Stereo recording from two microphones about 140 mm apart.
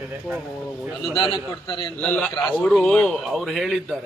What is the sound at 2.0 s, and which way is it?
A man's voice, 10° left (ahead or behind).